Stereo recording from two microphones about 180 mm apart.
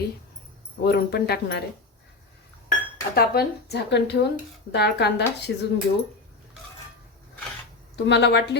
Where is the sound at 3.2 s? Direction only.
60° left (ahead or behind).